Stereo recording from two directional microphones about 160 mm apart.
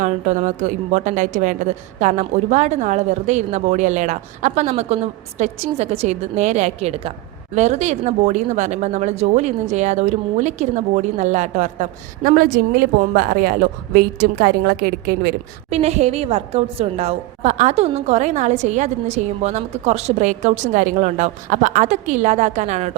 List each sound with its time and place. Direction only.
0.0 s speech: 50° right (ahead or behind); by 15.4 s 70° right (ahead or behind)
15.7 s speech: 45° right (ahead or behind)